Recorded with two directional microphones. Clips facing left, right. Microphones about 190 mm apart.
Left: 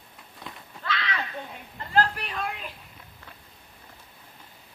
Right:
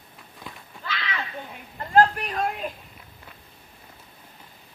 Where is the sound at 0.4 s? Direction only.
Centre (ahead or behind).